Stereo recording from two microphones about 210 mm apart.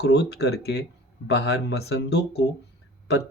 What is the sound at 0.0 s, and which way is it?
Speech, 50° left (ahead or behind).